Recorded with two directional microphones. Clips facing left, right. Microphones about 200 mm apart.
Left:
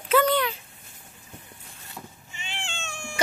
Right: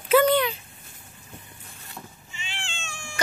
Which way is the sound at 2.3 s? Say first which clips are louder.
Left 2 dB; 60° left (ahead or behind).